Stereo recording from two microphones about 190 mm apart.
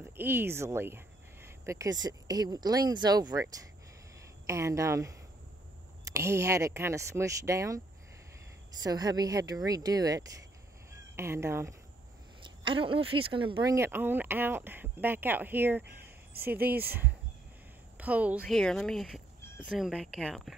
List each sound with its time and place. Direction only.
0.2 s speech: 10° right (ahead or behind)
4.5 s speech: 15° right (ahead or behind)
6.1 s speech: 15° right (ahead or behind)
8.8 s speech: 20° right (ahead or behind)
10.9 s cat: 15° right (ahead or behind)
12.4 s speech: 25° right (ahead or behind)
13.7 s speech: 10° right (ahead or behind)
18.4 s speech: 5° left (ahead or behind)